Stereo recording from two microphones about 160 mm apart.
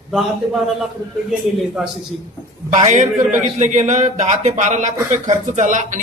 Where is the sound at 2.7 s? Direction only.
45° right (ahead or behind).